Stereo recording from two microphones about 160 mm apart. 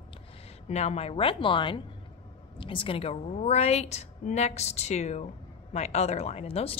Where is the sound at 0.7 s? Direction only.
45° left (ahead or behind).